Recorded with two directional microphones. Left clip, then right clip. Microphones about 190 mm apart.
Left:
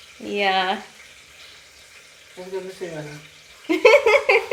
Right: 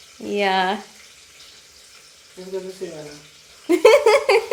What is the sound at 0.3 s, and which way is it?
Speech, 25° right (ahead or behind).